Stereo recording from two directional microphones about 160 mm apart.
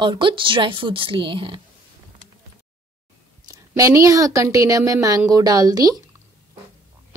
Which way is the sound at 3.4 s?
20° right (ahead or behind).